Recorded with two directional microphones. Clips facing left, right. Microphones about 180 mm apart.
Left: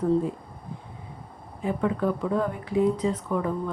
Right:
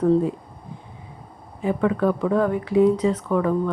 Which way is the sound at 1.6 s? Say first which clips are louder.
Right 5 dB; 90° right.